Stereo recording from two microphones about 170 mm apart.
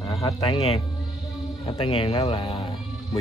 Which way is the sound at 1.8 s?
35° left (ahead or behind).